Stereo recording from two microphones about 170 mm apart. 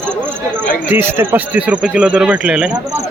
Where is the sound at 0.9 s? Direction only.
10° right (ahead or behind).